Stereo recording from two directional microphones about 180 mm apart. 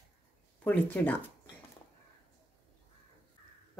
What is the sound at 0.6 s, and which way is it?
Speech, 10° left (ahead or behind).